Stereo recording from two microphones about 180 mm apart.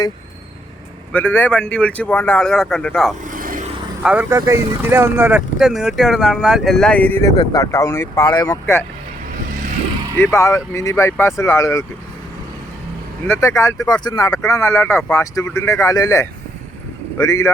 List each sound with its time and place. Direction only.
1.1 s speech: 10° left (ahead or behind)
3.2 s vehicle: 50° right (ahead or behind)
4.0 s speech: 10° right (ahead or behind)
5.5 s speech: centre (ahead or behind); by 8.8 s 15° left (ahead or behind)
10.3 s speech: 15° left (ahead or behind)
13.2 s speech: 15° left (ahead or behind)